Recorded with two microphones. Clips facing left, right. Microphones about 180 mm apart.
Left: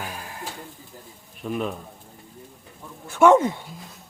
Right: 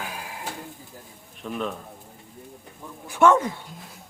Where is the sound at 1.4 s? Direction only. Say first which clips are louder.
Left 2 dB; 10° left (ahead or behind).